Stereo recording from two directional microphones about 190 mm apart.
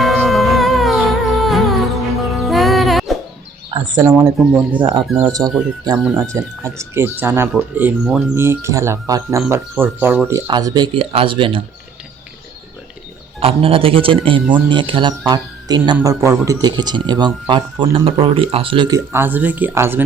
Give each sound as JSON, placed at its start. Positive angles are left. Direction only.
{"t": 0.3, "sound": "music", "side_deg": 0}
{"t": 3.9, "sound": "speech", "side_deg": -15}
{"t": 4.8, "sound": "speech", "side_deg": -25}
{"t": 13.4, "sound": "speech", "side_deg": -30}